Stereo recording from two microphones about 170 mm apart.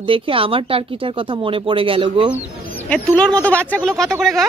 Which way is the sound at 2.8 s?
5° left (ahead or behind).